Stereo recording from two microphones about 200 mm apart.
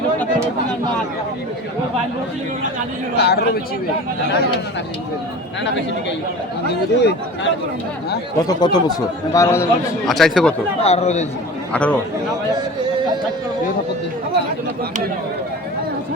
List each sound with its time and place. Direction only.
3.2 s speech: 55° left (ahead or behind)
6.7 s speech: 55° left (ahead or behind)
8.4 s a man's voice: 20° left (ahead or behind)
10.1 s speech: centre (ahead or behind)
10.8 s speech: 30° left (ahead or behind)
11.7 s a man's voice: 5° left (ahead or behind)